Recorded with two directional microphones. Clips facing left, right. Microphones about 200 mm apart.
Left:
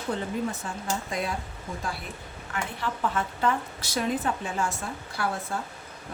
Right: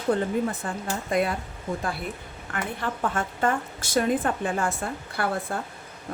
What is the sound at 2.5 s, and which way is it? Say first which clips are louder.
A woman's voice: right 2 dB; 50° right (ahead or behind).